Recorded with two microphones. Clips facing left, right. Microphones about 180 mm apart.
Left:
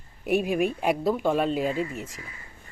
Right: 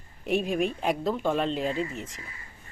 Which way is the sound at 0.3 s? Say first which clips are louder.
Left 2 dB; 10° left (ahead or behind).